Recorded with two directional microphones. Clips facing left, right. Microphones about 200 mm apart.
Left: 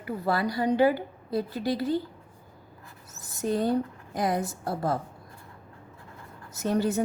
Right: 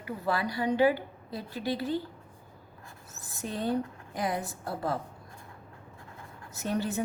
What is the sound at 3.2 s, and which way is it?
A woman's voice, 40° left (ahead or behind).